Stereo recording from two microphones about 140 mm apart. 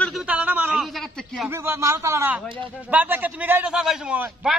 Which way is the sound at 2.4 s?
35° right (ahead or behind).